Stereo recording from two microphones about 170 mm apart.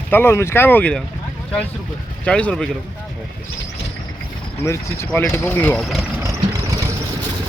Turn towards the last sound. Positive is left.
turn(degrees=-20)  # may be behind; listen again after turning